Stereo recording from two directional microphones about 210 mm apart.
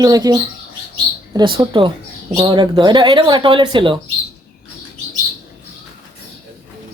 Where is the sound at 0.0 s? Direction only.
15° right (ahead or behind).